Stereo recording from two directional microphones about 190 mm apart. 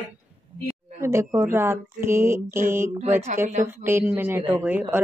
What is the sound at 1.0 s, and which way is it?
Speech, 15° right (ahead or behind).